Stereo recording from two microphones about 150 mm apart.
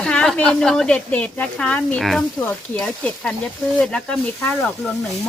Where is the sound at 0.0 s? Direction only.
5° left (ahead or behind).